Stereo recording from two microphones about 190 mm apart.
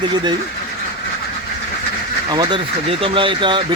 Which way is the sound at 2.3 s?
25° right (ahead or behind).